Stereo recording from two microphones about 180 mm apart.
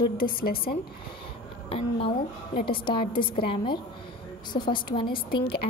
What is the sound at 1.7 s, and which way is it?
Speech, 35° left (ahead or behind).